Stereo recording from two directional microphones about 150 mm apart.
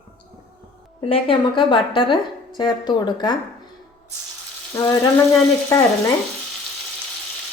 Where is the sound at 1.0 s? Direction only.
35° left (ahead or behind).